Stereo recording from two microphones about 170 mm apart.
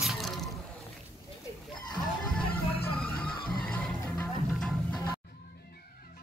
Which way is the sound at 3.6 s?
5° left (ahead or behind).